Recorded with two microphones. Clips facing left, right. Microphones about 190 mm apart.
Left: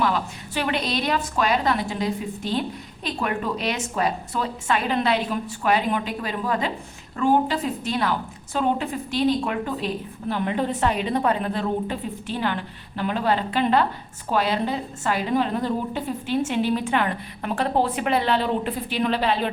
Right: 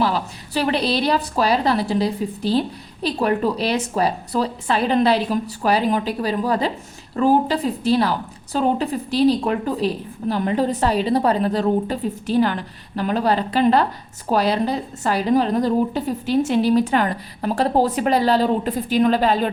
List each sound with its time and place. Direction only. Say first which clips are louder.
0.0 s a woman's voice: right 2 dB; 35° right (ahead or behind)